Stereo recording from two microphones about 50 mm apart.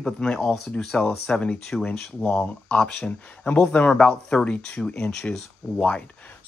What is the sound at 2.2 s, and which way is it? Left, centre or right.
Speech, left.